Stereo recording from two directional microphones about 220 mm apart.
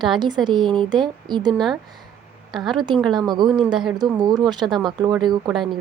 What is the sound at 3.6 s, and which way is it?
Speech, centre (ahead or behind).